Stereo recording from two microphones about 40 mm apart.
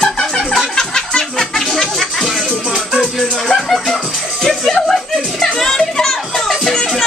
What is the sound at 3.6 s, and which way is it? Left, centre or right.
Music, centre.